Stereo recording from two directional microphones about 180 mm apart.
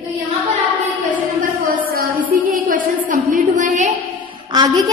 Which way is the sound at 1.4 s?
50° right (ahead or behind).